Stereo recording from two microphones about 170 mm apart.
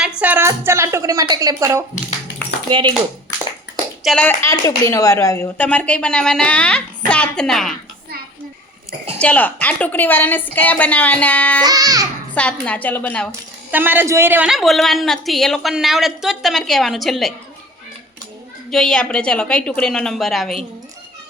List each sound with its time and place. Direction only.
0.0 s speech: 10° right (ahead or behind)
2.6 s speech: 30° right (ahead or behind)
4.0 s a woman's voice: 5° left (ahead or behind)
4.4 s speech: 20° left (ahead or behind); by 7.8 s centre (ahead or behind)
9.1 s speech: 10° left (ahead or behind)
11.6 s music: 20° right (ahead or behind)
12.3 s speech: 10° left (ahead or behind)
13.7 s a woman's voice: 10° right (ahead or behind)
18.7 s a woman's voice: 5° left (ahead or behind)